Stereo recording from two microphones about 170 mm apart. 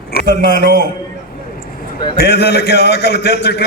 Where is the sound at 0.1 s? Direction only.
65° left (ahead or behind).